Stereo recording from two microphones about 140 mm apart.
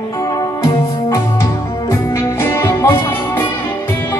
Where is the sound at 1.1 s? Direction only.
20° left (ahead or behind).